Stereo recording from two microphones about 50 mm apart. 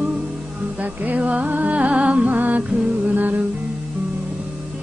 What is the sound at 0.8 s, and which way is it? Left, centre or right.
Music, right.